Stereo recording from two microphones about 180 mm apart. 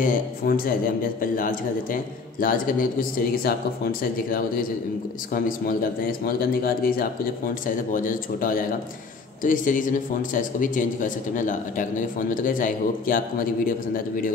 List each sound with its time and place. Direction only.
0.0 s speech: 50° left (ahead or behind)